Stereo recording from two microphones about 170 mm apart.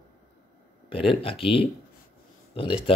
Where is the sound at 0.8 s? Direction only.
30° left (ahead or behind).